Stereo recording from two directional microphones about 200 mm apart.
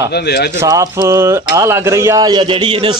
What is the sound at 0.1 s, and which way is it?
Speech, 55° left (ahead or behind).